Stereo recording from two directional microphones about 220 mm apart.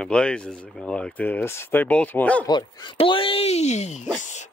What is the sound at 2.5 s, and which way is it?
Speech, 20° left (ahead or behind).